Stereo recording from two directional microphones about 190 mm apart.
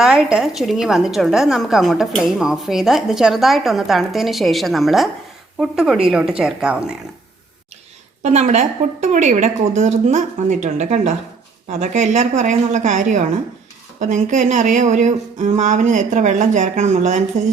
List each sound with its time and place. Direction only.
0.0 s a woman's voice: 5° right (ahead or behind)
8.2 s speech: 35° right (ahead or behind)